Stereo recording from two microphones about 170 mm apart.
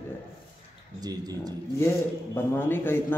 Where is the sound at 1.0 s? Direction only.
25° right (ahead or behind).